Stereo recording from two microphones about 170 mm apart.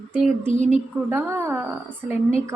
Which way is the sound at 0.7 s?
15° right (ahead or behind).